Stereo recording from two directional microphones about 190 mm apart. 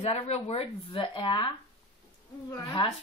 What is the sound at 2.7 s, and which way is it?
Speech, 30° left (ahead or behind).